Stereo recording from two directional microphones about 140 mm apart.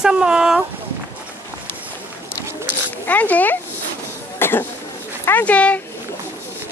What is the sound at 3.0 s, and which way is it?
Speech, 10° left (ahead or behind).